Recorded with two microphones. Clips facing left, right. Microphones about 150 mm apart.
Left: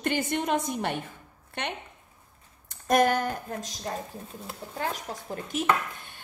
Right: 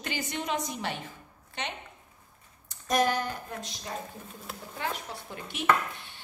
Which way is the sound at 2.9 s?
55° left (ahead or behind).